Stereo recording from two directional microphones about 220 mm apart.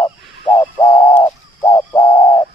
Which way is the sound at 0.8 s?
10° left (ahead or behind).